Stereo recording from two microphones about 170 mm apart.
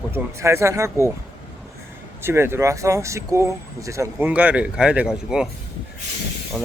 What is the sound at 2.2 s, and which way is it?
Speech, 15° right (ahead or behind).